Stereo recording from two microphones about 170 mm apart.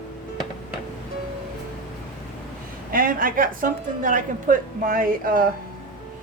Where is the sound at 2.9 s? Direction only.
55° right (ahead or behind).